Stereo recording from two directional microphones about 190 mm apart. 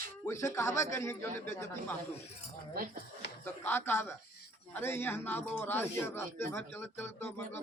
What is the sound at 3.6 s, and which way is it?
Speech, 10° left (ahead or behind).